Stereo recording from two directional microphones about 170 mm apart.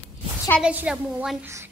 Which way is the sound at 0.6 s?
5° right (ahead or behind).